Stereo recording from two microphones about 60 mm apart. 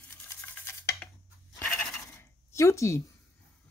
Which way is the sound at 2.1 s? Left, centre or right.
Left.